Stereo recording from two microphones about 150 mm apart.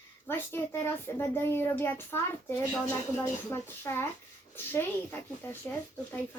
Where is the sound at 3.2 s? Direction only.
20° left (ahead or behind).